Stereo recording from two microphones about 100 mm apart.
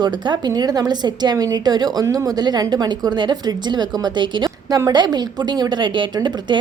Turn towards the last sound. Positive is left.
turn(degrees=-45)  # may be behind; listen again after turning